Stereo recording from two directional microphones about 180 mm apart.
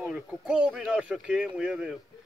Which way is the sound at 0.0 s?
5° right (ahead or behind).